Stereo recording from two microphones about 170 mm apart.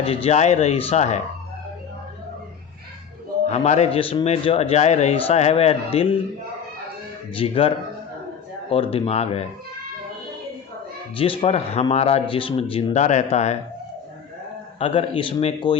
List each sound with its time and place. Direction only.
0.0 s a man's voice: 35° left (ahead or behind)
3.4 s a man's voice: 40° left (ahead or behind)
7.3 s a man's voice: 30° left (ahead or behind)
8.7 s a man's voice: 35° left (ahead or behind)
11.2 s a man's voice: 35° left (ahead or behind)
14.8 s a man's voice: 35° left (ahead or behind)